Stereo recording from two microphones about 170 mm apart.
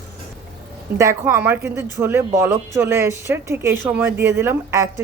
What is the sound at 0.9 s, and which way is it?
Speech, 15° right (ahead or behind).